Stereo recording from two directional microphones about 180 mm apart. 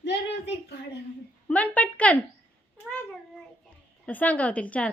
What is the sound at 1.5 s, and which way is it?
Speech, 10° left (ahead or behind).